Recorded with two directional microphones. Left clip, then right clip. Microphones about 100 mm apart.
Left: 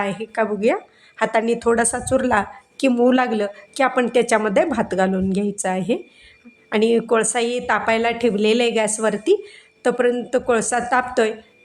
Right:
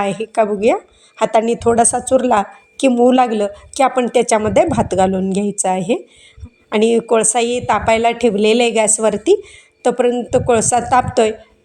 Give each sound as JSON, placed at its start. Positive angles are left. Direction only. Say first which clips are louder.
{"t": 0.0, "sound": "a woman's voice", "louder": "right 6 dB", "side_deg": -30}